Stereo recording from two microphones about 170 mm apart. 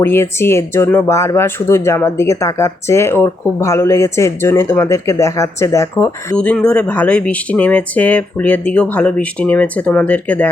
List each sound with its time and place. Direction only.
0.0 s speech: 15° left (ahead or behind)
6.3 s speech: 5° left (ahead or behind)